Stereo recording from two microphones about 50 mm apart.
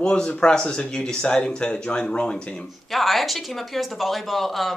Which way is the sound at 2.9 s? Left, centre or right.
Centre.